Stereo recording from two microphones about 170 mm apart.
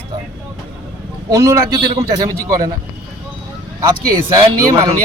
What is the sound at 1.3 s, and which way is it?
Speech, 20° right (ahead or behind).